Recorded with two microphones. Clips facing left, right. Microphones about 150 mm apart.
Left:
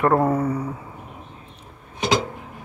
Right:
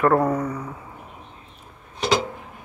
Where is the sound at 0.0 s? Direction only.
25° left (ahead or behind).